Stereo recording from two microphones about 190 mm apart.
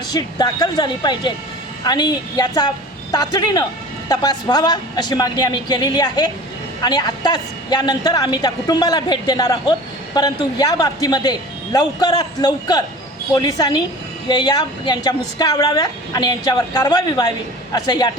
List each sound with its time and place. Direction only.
0.1 s a woman's voice: 20° left (ahead or behind)